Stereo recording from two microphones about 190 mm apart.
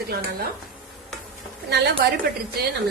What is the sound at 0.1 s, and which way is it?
Speech, 55° right (ahead or behind).